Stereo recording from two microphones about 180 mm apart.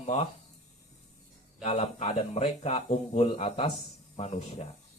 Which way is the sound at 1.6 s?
40° left (ahead or behind).